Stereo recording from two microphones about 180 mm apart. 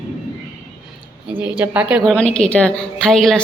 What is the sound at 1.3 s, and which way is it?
Speech, 10° right (ahead or behind).